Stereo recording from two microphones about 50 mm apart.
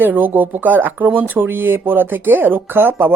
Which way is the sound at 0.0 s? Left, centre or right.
Right.